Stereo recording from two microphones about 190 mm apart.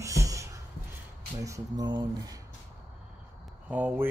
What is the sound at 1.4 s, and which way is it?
Speech, 20° right (ahead or behind).